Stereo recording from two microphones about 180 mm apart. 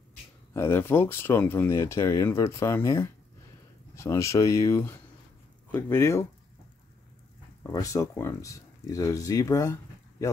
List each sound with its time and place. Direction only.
0.5 s speech: 15° left (ahead or behind)
7.6 s speech: 20° left (ahead or behind)